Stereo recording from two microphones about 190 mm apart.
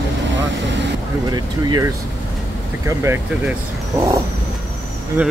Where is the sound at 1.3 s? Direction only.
20° right (ahead or behind).